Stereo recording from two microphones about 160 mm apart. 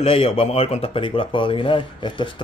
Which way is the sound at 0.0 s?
35° left (ahead or behind).